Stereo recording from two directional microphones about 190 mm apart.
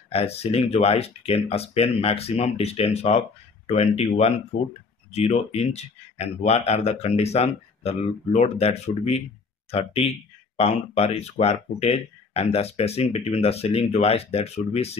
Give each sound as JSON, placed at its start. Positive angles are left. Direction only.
{"t": 0.1, "sound": "speech", "side_deg": 30}